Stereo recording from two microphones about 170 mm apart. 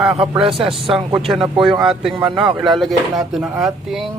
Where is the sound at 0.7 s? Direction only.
Centre (ahead or behind).